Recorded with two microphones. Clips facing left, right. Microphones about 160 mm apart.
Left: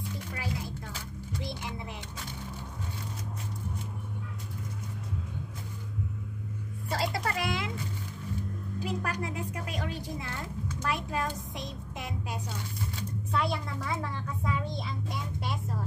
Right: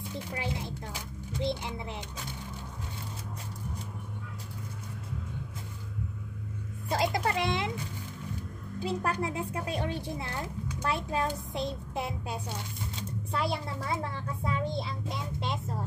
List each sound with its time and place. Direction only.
0.3 s a sound: 25° right (ahead or behind)
6.9 s a child's voice: 20° right (ahead or behind)
8.8 s a child's voice: 30° right (ahead or behind)